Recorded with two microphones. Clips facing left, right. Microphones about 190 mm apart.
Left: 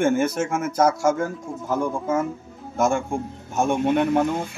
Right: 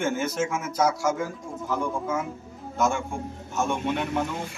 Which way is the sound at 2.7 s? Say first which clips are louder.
Left 4 dB; 50° left (ahead or behind).